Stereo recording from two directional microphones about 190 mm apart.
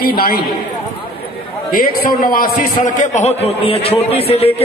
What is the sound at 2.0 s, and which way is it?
A man's voice, 45° left (ahead or behind).